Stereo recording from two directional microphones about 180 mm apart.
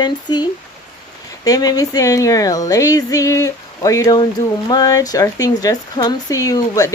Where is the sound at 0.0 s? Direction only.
25° left (ahead or behind).